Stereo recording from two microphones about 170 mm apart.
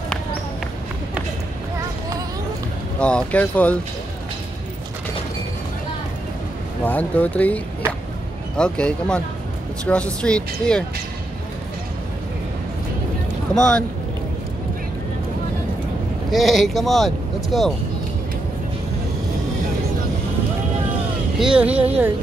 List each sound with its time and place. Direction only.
3.0 s speech: 5° left (ahead or behind)
6.8 s speech: 10° left (ahead or behind)
13.6 s speech: 5° left (ahead or behind)
16.3 s speech: centre (ahead or behind)
21.4 s speech: 5° right (ahead or behind)
21.7 s speech: 35° right (ahead or behind)